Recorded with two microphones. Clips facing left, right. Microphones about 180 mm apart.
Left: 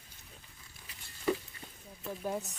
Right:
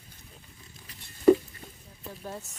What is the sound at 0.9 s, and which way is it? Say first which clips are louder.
Patter: right 13 dB; 45° right (ahead or behind).